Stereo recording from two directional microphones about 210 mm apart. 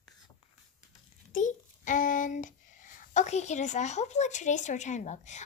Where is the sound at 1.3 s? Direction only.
35° left (ahead or behind).